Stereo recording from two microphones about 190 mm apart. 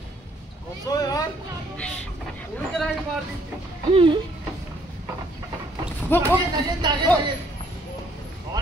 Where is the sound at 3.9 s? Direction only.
25° right (ahead or behind).